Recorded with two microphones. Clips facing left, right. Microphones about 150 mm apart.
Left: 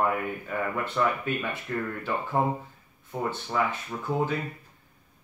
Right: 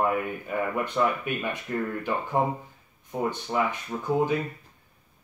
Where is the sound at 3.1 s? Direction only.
15° right (ahead or behind).